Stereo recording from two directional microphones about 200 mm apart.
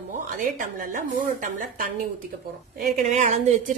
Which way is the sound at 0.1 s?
40° right (ahead or behind).